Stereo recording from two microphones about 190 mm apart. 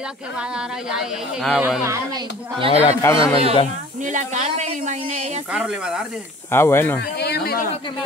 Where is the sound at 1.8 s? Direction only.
15° right (ahead or behind).